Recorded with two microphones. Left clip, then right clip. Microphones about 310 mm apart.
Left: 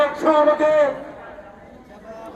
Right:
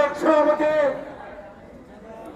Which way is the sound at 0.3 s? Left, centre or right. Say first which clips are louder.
Left 3 dB; centre.